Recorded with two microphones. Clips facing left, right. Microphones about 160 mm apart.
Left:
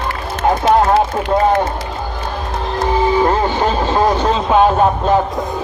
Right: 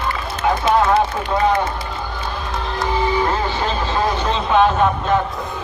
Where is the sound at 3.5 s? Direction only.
45° left (ahead or behind).